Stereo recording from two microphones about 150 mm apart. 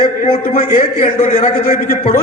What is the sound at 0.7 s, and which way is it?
A man's voice, 55° left (ahead or behind).